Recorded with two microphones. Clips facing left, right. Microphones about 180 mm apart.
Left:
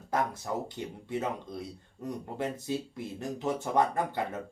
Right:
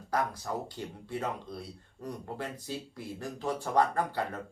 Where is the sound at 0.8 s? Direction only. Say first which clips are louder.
Left 2 dB; 20° left (ahead or behind).